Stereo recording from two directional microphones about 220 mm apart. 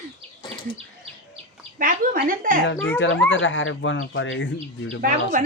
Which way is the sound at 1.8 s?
40° right (ahead or behind).